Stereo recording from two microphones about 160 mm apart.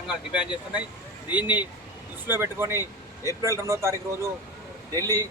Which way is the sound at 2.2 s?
15° right (ahead or behind).